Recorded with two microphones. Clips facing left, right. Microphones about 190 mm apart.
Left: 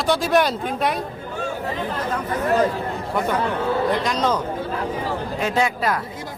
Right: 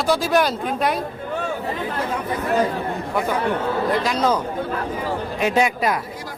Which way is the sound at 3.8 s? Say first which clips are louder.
Right 1 dB; 5° right (ahead or behind).